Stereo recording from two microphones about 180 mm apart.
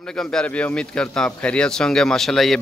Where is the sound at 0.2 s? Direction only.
5° left (ahead or behind).